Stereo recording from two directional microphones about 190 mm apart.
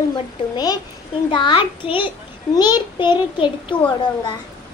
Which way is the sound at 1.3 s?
25° left (ahead or behind).